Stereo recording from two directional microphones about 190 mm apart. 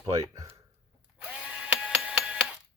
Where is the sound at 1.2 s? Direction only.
5° right (ahead or behind).